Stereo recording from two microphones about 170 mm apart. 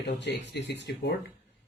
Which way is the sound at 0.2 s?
90° left.